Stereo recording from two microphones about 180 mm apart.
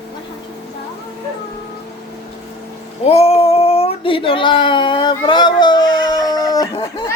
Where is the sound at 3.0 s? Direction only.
35° left (ahead or behind).